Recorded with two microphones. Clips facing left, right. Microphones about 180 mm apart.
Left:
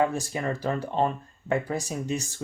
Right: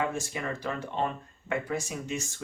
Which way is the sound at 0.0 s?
35° left (ahead or behind).